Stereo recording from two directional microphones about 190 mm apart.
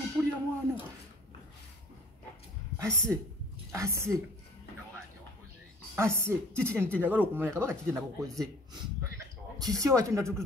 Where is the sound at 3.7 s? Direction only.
15° right (ahead or behind).